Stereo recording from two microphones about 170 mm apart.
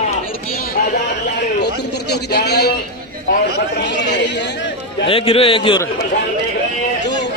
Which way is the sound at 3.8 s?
90° left.